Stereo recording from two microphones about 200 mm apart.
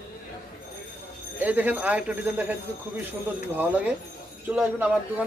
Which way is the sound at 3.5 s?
10° right (ahead or behind).